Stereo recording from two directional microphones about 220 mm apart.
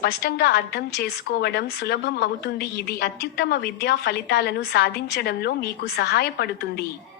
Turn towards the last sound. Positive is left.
turn(degrees=45)  # may be behind; listen again after turning